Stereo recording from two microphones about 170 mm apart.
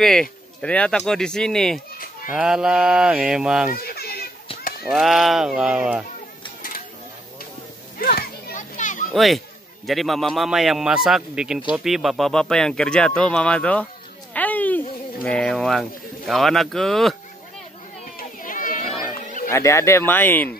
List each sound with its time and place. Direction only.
0.0 s speech: 5° left (ahead or behind)
3.7 s children playing: 65° left (ahead or behind)
4.8 s speech: centre (ahead or behind)
8.0 s children playing: 60° left (ahead or behind)
8.7 s children playing: 45° left (ahead or behind)
9.1 s speech: centre (ahead or behind)
14.3 s a sound: 10° left (ahead or behind)
15.2 s speech: 5° left (ahead or behind)
18.1 s a sound: 55° left (ahead or behind)
19.5 s speech: 15° left (ahead or behind)